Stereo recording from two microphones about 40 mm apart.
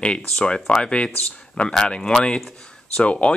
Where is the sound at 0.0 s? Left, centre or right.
Left.